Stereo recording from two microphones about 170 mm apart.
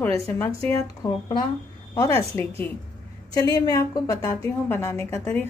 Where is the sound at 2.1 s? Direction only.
10° left (ahead or behind).